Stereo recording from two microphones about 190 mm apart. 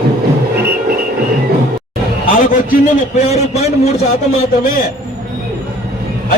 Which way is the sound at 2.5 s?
40° left (ahead or behind).